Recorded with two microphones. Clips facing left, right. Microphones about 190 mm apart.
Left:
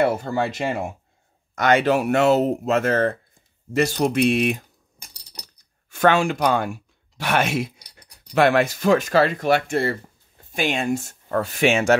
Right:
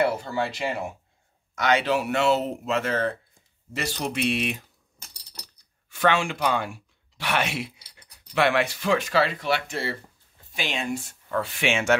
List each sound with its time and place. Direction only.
0.0 s speech: 50° left (ahead or behind)
4.9 s a sound: 15° left (ahead or behind)
5.9 s speech: 45° left (ahead or behind)